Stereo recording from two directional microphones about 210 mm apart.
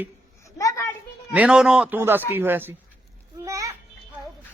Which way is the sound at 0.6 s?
15° left (ahead or behind).